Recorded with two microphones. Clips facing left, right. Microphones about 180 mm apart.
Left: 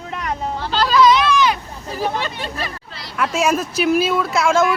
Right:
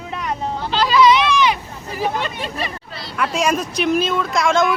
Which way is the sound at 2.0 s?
Centre (ahead or behind).